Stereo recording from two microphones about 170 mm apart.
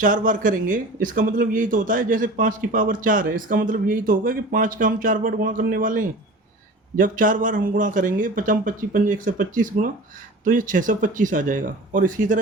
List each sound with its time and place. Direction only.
0.0 s speech: 50° right (ahead or behind)